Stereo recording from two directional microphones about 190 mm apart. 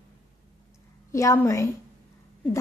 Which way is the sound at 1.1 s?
15° left (ahead or behind).